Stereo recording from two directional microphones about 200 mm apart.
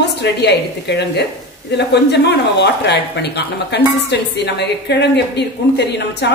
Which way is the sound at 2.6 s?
60° left (ahead or behind).